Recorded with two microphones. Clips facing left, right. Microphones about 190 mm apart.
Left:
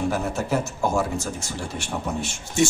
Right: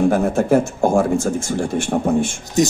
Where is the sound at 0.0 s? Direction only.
50° right (ahead or behind).